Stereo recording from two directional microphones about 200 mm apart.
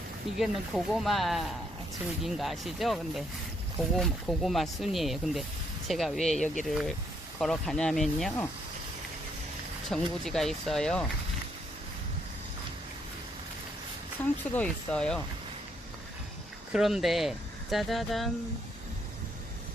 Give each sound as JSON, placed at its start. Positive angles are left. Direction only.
{"t": 0.3, "sound": "speech", "side_deg": 0}
{"t": 6.4, "sound": "speech", "side_deg": 40}
{"t": 6.7, "sound": "speech", "side_deg": 0}
{"t": 9.9, "sound": "speech", "side_deg": 0}
{"t": 14.5, "sound": "speech", "side_deg": 5}
{"t": 16.7, "sound": "speech", "side_deg": 0}